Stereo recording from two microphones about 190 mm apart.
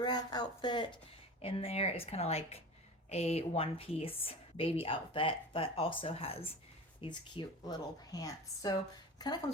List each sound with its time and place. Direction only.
0.0 s a woman's voice: 20° left (ahead or behind)